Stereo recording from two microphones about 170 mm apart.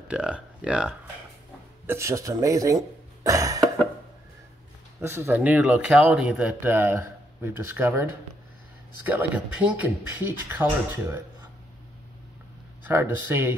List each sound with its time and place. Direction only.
0.1 s speech: 5° right (ahead or behind)
3.3 s cough: 20° right (ahead or behind)
5.0 s speech: 15° right (ahead or behind)
12.8 s speech: 10° right (ahead or behind)